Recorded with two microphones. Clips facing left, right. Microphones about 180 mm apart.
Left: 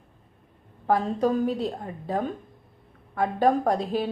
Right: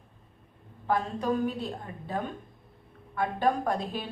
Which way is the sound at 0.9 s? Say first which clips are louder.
Left 5 dB; 35° left (ahead or behind).